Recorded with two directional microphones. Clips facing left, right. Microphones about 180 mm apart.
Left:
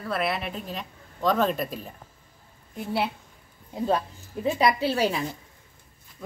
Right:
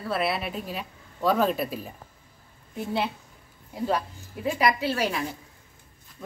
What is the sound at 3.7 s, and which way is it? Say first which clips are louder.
A woman's voice: left 2 dB; 25° left (ahead or behind).